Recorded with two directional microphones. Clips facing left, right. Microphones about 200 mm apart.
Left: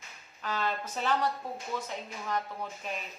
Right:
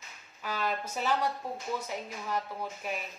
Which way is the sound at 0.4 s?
10° right (ahead or behind).